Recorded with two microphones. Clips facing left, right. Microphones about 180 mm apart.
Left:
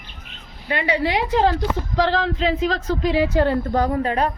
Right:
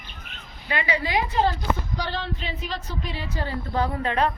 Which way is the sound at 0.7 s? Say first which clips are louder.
Left 4 dB; 55° left (ahead or behind).